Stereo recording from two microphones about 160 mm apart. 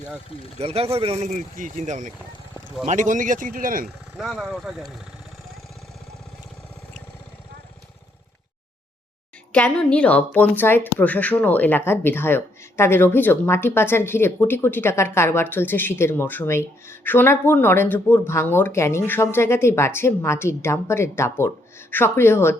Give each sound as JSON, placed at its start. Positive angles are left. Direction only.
{"t": 0.6, "sound": "speech", "side_deg": -40}
{"t": 3.8, "sound": "speech", "side_deg": 0}
{"t": 9.5, "sound": "a woman's voice", "side_deg": 10}